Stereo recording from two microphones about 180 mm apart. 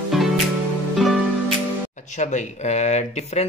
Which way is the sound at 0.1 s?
Centre (ahead or behind).